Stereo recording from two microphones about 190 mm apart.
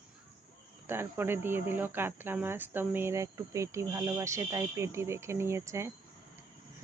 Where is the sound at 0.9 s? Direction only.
10° right (ahead or behind).